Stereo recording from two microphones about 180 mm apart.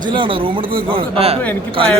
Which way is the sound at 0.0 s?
25° right (ahead or behind).